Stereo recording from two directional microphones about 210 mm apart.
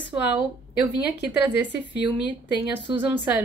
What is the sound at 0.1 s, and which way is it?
Speech, 15° right (ahead or behind).